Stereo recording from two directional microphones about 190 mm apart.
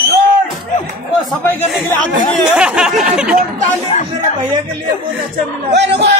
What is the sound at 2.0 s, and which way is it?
Speech, 45° left (ahead or behind).